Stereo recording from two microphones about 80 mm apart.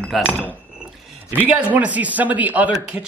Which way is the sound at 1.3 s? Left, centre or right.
Centre.